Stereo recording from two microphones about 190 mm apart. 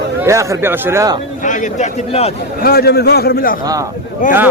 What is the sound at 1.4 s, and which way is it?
Speech, 40° left (ahead or behind).